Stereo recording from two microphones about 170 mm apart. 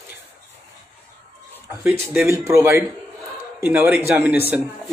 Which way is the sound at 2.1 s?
15° right (ahead or behind).